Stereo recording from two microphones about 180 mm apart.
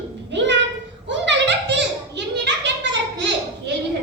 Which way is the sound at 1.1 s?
80° right.